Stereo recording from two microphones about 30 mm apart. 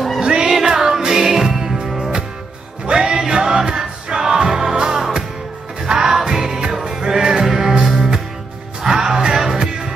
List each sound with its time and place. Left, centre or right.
0.2 s music: right
0.5 s music: centre
2.9 s music: right